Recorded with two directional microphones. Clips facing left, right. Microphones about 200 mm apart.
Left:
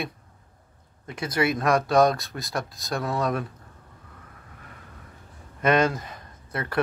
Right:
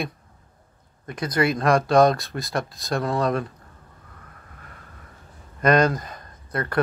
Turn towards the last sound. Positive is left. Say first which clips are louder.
# right 3 dB
turn(degrees=5)  # may be behind; listen again after turning